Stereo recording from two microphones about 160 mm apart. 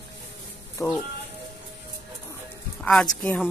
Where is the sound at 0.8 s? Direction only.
20° left (ahead or behind).